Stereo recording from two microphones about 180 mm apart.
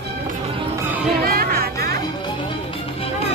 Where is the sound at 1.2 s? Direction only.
60° right (ahead or behind).